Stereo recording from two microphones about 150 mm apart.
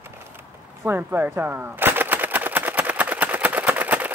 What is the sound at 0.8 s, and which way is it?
Gunshot, 15° right (ahead or behind).